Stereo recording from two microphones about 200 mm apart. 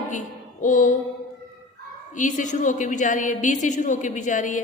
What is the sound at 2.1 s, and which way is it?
Mantra, 40° left (ahead or behind).